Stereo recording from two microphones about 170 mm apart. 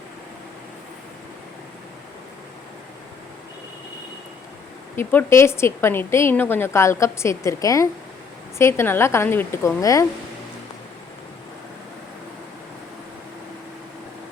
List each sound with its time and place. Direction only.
4.9 s a woman's voice: 15° left (ahead or behind)